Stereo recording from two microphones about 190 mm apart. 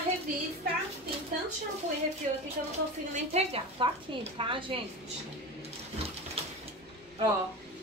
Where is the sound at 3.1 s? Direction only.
35° right (ahead or behind).